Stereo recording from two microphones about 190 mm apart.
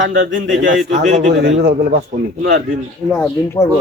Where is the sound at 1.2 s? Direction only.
65° right (ahead or behind).